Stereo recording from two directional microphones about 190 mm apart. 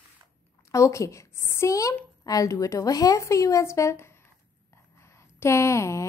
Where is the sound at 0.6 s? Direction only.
15° left (ahead or behind).